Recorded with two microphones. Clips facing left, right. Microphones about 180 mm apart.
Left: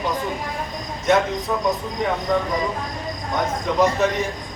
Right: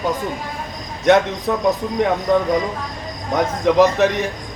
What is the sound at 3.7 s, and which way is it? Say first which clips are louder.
Speech: right 8 dB; 90° right.